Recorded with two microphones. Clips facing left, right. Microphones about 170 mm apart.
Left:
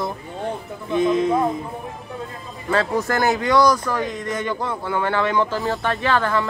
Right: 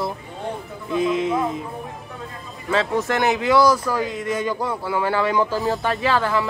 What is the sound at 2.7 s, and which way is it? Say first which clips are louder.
Speech: even; centre (ahead or behind).